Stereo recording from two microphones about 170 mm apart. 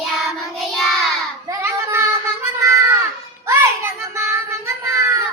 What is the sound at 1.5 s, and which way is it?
Child singing, 15° right (ahead or behind).